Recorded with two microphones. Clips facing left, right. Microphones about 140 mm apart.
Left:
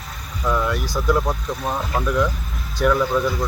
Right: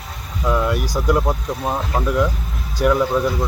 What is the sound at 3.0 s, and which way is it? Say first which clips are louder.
Speech: right 2 dB; 20° right (ahead or behind).